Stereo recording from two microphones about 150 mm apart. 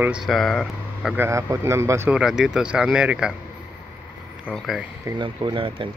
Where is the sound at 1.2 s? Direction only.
20° right (ahead or behind).